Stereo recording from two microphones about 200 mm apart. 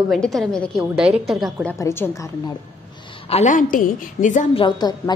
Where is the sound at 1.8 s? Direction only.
10° left (ahead or behind).